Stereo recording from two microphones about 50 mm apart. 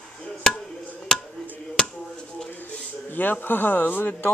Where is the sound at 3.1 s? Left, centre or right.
Left.